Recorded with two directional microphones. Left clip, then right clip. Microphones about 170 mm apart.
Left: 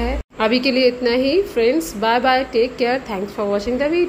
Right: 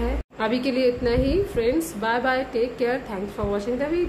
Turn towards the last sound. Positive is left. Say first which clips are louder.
# left 6 dB
turn(degrees=20)  # may be behind; listen again after turning